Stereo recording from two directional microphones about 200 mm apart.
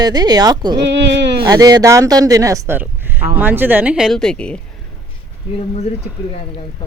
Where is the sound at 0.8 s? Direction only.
60° right (ahead or behind).